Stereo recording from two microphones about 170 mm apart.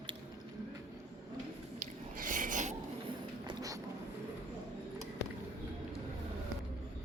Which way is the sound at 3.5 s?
20° right (ahead or behind).